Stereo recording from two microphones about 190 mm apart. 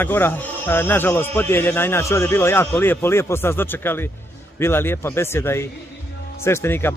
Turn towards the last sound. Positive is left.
turn(degrees=10)  # may be behind; listen again after turning